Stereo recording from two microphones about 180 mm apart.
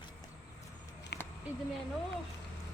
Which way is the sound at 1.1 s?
70° left (ahead or behind).